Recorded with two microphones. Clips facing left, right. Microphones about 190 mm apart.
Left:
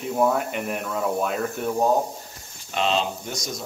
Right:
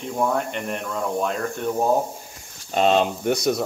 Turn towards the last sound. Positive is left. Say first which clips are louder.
# right 11 dB
turn(degrees=-60)  # may be behind; listen again after turning